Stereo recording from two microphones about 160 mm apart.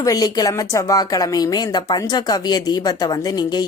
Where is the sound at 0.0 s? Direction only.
25° left (ahead or behind).